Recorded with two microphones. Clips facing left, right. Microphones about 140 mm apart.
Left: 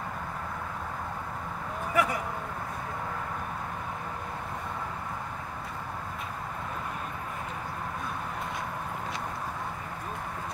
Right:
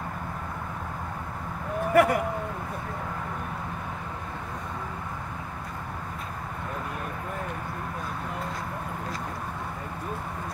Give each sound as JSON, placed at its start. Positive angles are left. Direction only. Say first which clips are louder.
{"t": 2.0, "sound": "speech", "louder": "right 8 dB", "side_deg": -60}